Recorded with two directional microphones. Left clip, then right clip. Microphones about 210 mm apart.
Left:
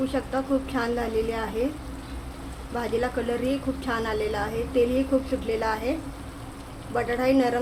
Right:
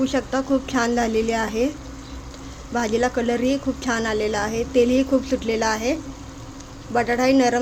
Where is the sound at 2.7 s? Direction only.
30° right (ahead or behind).